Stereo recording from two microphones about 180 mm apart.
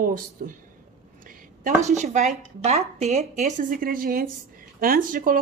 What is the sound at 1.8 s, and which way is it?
A woman's voice, 40° right (ahead or behind).